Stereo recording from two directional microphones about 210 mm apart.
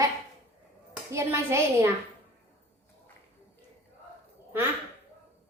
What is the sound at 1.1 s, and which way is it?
Speech, 15° right (ahead or behind).